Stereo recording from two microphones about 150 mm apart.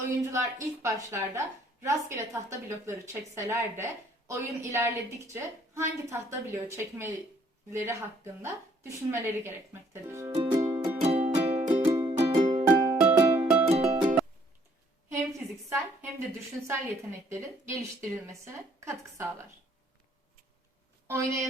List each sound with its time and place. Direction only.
0.3 s a woman's voice: 20° right (ahead or behind)
10.3 s music: 35° right (ahead or behind)
10.6 s music: 20° right (ahead or behind)
11.0 s music: 45° right (ahead or behind)
11.9 s music: 25° right (ahead or behind)
12.4 s music: 50° right (ahead or behind)
13.0 s music: 10° right (ahead or behind)
13.7 s music: 45° right (ahead or behind)
15.1 s a sound: 15° right (ahead or behind)
16.6 s a woman's voice: 20° right (ahead or behind)
21.1 s a woman's voice: 20° right (ahead or behind)